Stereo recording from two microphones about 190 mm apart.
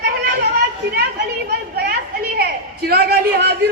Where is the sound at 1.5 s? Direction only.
55° right (ahead or behind).